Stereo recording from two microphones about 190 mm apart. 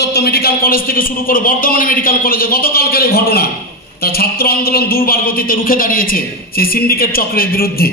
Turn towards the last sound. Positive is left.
turn(degrees=50)  # may be behind; listen again after turning